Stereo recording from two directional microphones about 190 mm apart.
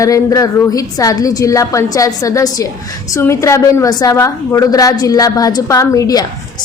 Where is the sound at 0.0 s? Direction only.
15° left (ahead or behind).